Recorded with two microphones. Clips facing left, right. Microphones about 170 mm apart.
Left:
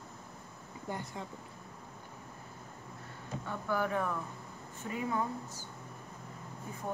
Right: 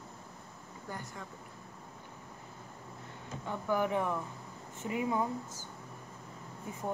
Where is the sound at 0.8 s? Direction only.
20° left (ahead or behind).